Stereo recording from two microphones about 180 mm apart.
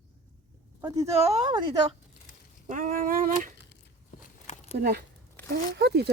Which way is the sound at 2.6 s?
45° right (ahead or behind).